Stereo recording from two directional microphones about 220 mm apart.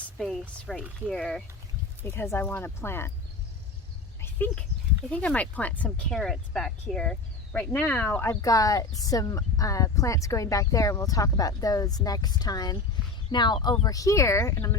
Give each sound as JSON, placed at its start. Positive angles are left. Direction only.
{"t": 0.2, "sound": "speech", "side_deg": 0}
{"t": 4.2, "sound": "a sound", "side_deg": 10}
{"t": 5.0, "sound": "speech", "side_deg": 5}